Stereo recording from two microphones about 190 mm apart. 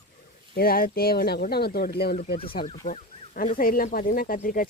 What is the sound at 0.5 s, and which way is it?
Speech, 50° left (ahead or behind).